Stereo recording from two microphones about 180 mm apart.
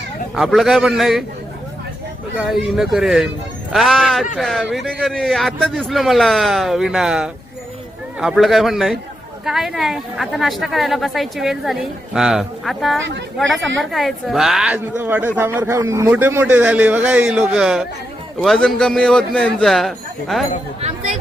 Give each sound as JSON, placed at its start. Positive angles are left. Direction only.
{"t": 0.3, "sound": "a woman's voice", "side_deg": 0}
{"t": 2.4, "sound": "a woman's voice", "side_deg": 0}
{"t": 13.1, "sound": "speech", "side_deg": -85}
{"t": 13.9, "sound": "a woman's voice", "side_deg": 0}
{"t": 20.8, "sound": "speech", "side_deg": -35}